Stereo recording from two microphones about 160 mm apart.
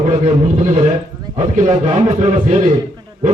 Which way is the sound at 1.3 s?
45° right (ahead or behind).